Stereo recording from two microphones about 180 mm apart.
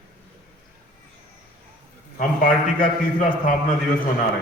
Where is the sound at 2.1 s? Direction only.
45° left (ahead or behind).